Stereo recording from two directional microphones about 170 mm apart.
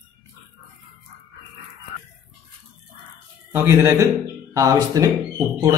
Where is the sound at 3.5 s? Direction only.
15° right (ahead or behind).